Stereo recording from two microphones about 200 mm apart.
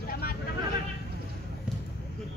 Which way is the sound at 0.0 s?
50° left (ahead or behind).